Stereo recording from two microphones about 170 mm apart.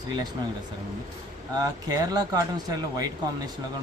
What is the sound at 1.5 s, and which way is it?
Speech, 20° right (ahead or behind).